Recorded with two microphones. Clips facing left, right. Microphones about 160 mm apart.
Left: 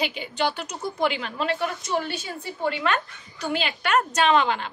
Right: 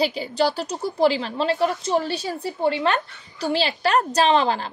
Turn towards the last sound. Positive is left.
turn(degrees=-35)  # may be behind; listen again after turning